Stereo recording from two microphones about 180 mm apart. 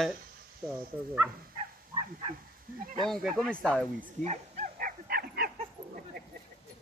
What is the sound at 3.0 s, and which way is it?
Speech, centre (ahead or behind).